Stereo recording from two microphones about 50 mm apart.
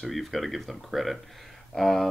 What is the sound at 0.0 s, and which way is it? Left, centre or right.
Speech, centre.